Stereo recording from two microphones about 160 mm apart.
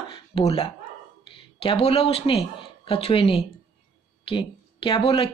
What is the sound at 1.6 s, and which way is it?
A woman's voice, 35° left (ahead or behind).